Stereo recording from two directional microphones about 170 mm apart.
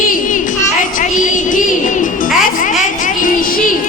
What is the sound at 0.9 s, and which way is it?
Music, 50° left (ahead or behind).